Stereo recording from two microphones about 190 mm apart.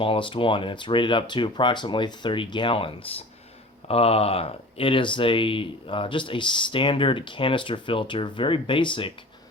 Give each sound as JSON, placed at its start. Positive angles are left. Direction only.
{"t": 0.0, "sound": "speech", "side_deg": 25}